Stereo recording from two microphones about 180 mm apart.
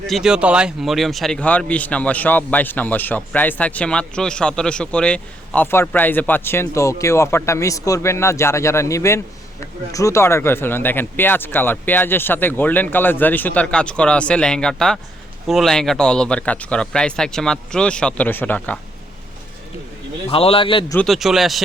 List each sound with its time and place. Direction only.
0.1 s speech: 5° right (ahead or behind)
20.3 s a man's voice: 30° left (ahead or behind)
20.9 s speech: 5° left (ahead or behind)